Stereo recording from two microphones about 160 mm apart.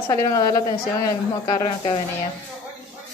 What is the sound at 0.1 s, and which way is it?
A woman's voice, 20° left (ahead or behind).